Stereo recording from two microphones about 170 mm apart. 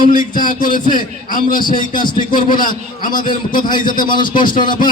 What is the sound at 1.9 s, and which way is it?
Speech, 25° left (ahead or behind).